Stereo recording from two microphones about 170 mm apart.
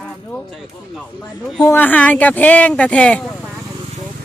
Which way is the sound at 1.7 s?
10° left (ahead or behind).